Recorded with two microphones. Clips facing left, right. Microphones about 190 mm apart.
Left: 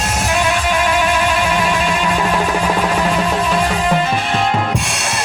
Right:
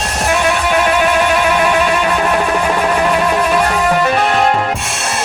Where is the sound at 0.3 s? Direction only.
65° right (ahead or behind).